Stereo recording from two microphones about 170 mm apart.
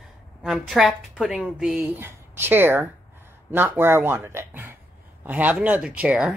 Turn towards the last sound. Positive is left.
turn(degrees=-5)  # may be behind; listen again after turning